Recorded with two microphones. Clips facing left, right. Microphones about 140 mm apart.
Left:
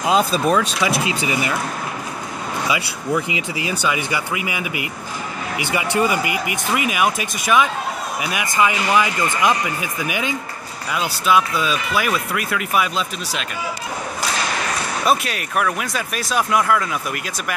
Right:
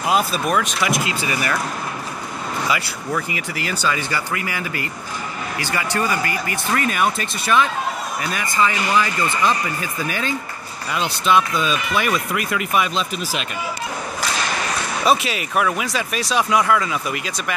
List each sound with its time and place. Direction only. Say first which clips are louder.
0.0 s speech: left 3 dB; 25° left (ahead or behind)
2.7 s speech: left 3 dB; 20° left (ahead or behind); by 13.5 s centre (ahead or behind)
15.0 s speech: right 1 dB; centre (ahead or behind)